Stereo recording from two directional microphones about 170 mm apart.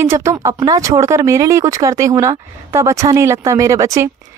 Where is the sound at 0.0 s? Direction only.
15° right (ahead or behind).